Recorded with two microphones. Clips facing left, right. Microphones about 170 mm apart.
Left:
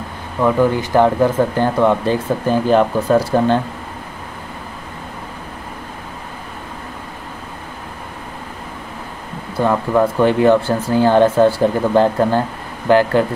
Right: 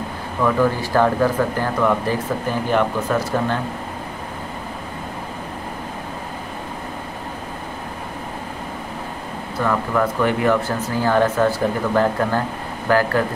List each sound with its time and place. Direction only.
0.4 s speech: 20° left (ahead or behind)
9.6 s speech: 25° left (ahead or behind)